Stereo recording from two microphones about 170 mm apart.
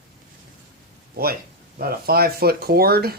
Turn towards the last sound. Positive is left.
turn(degrees=-65)  # may be behind; listen again after turning